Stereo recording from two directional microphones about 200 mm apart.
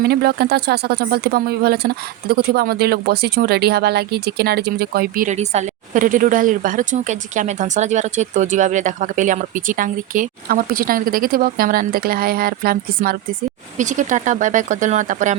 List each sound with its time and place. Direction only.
0.0 s speech: 50° right (ahead or behind)